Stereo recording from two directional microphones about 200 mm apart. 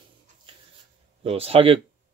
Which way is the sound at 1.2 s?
30° right (ahead or behind).